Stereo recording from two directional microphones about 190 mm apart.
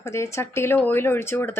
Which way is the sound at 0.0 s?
15° left (ahead or behind).